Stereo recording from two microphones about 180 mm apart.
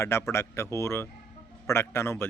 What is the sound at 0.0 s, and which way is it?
Speech, 15° left (ahead or behind).